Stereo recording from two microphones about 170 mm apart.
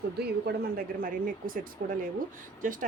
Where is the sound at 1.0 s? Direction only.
55° right (ahead or behind).